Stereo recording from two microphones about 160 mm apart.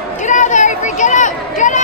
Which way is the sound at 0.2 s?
50° left (ahead or behind).